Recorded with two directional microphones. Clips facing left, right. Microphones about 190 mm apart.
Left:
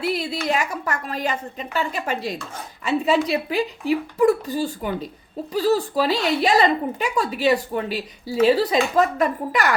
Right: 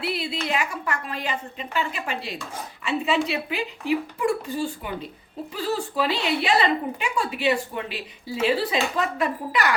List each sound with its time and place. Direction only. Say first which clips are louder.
0.0 s speech: left 4 dB; 40° left (ahead or behind)